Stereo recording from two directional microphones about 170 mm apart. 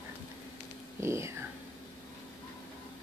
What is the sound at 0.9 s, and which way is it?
Speech, 15° right (ahead or behind).